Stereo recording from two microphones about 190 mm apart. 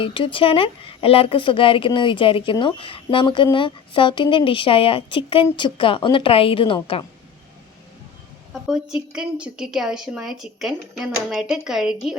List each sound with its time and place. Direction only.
0.0 s speech: 25° left (ahead or behind)
8.6 s a woman's voice: 5° right (ahead or behind)